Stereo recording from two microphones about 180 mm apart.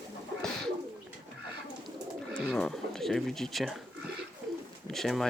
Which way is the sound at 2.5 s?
5° left (ahead or behind).